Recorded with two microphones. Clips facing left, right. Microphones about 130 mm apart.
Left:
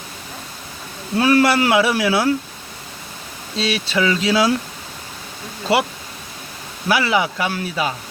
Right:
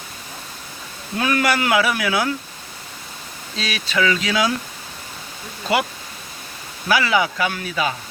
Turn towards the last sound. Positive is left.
turn(degrees=25)  # may be behind; listen again after turning